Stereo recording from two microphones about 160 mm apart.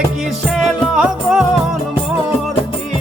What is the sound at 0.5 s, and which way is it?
Music, 5° right (ahead or behind).